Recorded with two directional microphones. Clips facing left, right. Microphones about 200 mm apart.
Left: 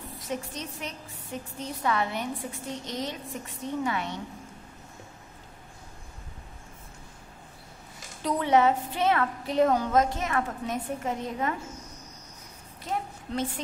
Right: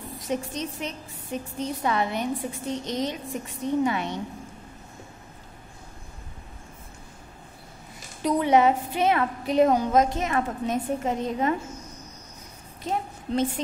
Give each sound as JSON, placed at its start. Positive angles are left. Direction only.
{"t": 0.3, "sound": "a woman's voice", "side_deg": -20}
{"t": 8.2, "sound": "a woman's voice", "side_deg": -15}
{"t": 12.9, "sound": "a woman's voice", "side_deg": -25}